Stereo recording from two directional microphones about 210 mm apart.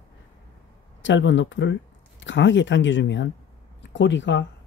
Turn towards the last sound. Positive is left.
turn(degrees=60)  # may be behind; listen again after turning